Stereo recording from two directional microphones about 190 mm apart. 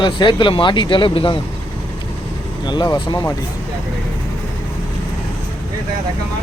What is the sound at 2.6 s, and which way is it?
Speech, 20° left (ahead or behind).